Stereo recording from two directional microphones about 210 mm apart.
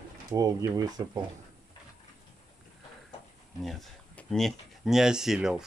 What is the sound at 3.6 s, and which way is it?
Speech, centre (ahead or behind).